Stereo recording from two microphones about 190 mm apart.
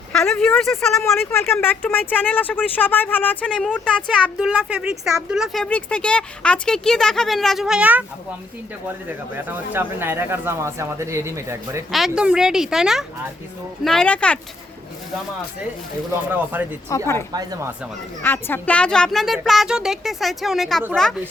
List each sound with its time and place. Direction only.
0.1 s a woman's voice: 5° left (ahead or behind)
1.3 s a woman's voice: 15° left (ahead or behind)
4.1 s a woman's voice: 5° right (ahead or behind)
11.9 s a woman's voice: centre (ahead or behind)
16.3 s speech: 10° right (ahead or behind)
16.9 s speech: 15° left (ahead or behind)
17.3 s speech: 15° right (ahead or behind)
18.2 s a woman's voice: 10° left (ahead or behind)